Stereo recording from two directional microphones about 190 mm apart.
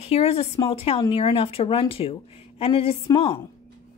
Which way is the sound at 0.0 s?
30° left (ahead or behind).